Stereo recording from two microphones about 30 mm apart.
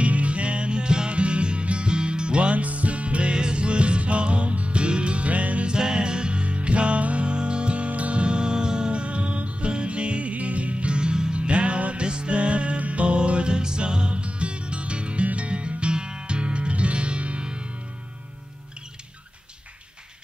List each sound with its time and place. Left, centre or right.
0.0 s music: right
2.5 s music: right
5.7 s music: right
11.3 s music: right